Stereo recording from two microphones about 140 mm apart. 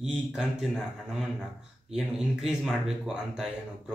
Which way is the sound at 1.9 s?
5° right (ahead or behind).